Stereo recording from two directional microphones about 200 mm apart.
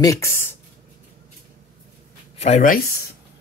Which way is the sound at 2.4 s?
35° left (ahead or behind).